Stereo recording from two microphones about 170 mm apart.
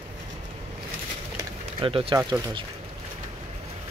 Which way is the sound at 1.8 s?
30° right (ahead or behind).